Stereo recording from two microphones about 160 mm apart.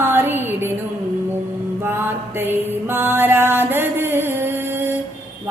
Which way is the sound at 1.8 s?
15° right (ahead or behind).